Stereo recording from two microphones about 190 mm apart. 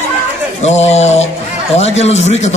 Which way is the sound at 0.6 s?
35° left (ahead or behind).